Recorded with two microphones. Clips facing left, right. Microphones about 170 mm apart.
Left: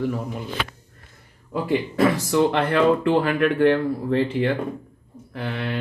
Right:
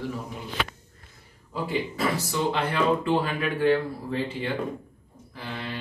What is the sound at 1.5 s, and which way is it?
Speech, 60° left (ahead or behind).